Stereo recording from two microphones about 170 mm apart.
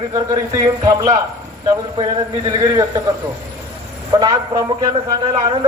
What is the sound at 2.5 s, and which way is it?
Speech, 20° right (ahead or behind).